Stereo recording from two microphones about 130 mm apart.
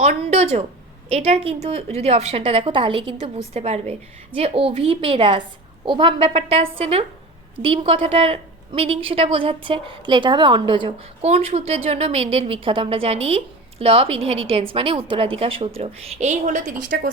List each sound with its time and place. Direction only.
0.0 s a woman's voice: 55° right (ahead or behind); by 10.9 s 40° right (ahead or behind)
11.2 s a woman's voice: 50° right (ahead or behind); by 17.0 s 75° right (ahead or behind)